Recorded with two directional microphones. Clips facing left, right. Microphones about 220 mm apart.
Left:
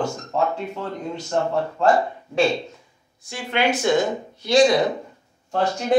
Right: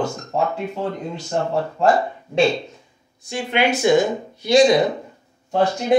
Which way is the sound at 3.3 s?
15° right (ahead or behind).